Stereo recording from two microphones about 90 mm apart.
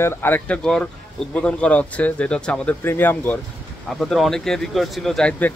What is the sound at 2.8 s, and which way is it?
Speech, 20° left (ahead or behind).